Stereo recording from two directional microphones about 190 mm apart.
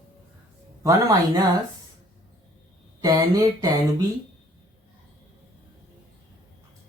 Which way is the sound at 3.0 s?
20° right (ahead or behind).